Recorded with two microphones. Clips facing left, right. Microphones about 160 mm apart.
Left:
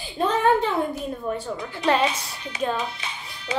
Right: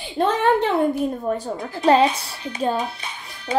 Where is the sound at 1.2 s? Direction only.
40° right (ahead or behind).